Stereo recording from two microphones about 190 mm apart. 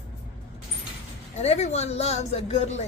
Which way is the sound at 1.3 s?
35° left (ahead or behind).